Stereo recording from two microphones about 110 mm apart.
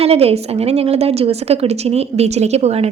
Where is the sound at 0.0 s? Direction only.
70° right (ahead or behind).